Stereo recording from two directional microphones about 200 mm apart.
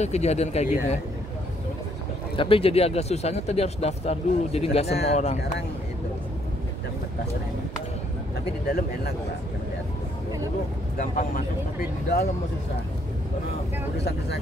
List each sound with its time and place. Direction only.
0.0 s speech: 35° left (ahead or behind)
2.3 s speech: 25° left (ahead or behind)
8.6 s a man's voice: 50° left (ahead or behind)
11.0 s speech: 40° left (ahead or behind)